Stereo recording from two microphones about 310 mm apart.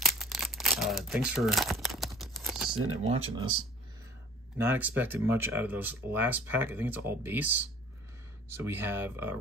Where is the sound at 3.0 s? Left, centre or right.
Centre.